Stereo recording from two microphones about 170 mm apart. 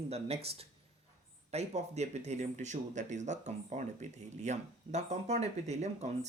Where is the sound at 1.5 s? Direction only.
40° right (ahead or behind).